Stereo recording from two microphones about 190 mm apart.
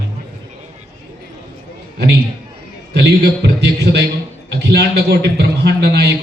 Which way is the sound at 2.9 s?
60° right (ahead or behind).